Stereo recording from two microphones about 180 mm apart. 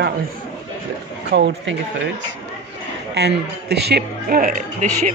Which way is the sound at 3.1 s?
70° right (ahead or behind).